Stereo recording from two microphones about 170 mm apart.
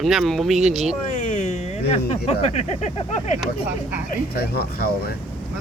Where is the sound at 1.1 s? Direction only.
40° left (ahead or behind).